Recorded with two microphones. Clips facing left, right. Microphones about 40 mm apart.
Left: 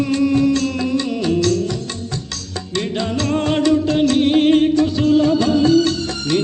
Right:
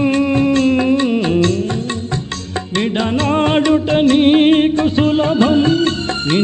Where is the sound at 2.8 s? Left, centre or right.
Right.